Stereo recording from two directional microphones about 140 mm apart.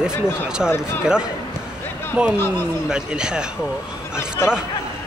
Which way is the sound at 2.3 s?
20° left (ahead or behind).